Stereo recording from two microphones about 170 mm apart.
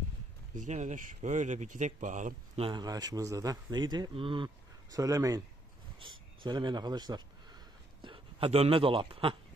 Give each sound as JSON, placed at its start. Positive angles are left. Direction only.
{"t": 0.6, "sound": "speech", "side_deg": -45}
{"t": 2.6, "sound": "speech", "side_deg": -25}
{"t": 4.9, "sound": "speech", "side_deg": -20}